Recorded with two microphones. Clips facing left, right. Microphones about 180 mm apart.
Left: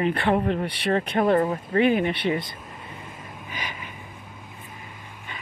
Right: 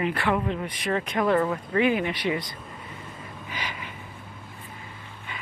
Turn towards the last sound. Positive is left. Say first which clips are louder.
# even
turn(degrees=15)  # may be behind; listen again after turning